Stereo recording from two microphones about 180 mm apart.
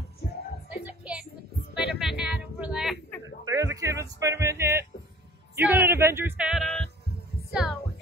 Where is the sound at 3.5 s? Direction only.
15° right (ahead or behind); by 7.8 s centre (ahead or behind).